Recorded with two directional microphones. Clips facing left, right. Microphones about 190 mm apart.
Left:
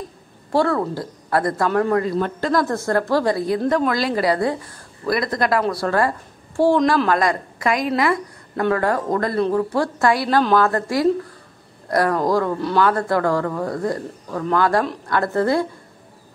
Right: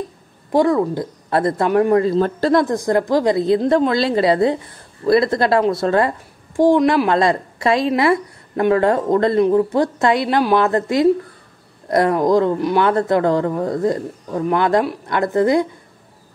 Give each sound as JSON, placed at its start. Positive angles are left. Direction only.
{"t": 0.5, "sound": "a woman's voice", "side_deg": -15}
{"t": 2.0, "sound": "speech", "side_deg": -30}
{"t": 2.6, "sound": "a woman's voice", "side_deg": -15}
{"t": 7.1, "sound": "a woman's voice", "side_deg": -25}